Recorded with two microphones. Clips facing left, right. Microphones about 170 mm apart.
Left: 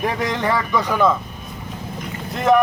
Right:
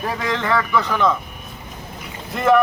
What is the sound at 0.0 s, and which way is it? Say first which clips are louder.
Speech: left 2 dB; 15° left (ahead or behind).